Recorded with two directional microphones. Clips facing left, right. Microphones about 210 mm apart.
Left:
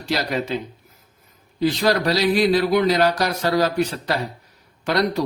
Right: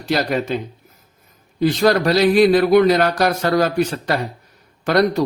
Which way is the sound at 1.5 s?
50° right (ahead or behind).